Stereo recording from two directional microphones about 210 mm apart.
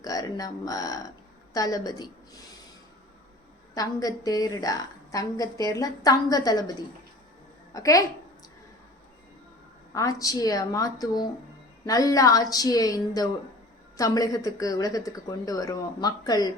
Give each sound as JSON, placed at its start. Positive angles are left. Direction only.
{"t": 0.0, "sound": "a woman's voice", "side_deg": 15}
{"t": 3.8, "sound": "a woman's voice", "side_deg": 15}
{"t": 9.9, "sound": "a woman's voice", "side_deg": 15}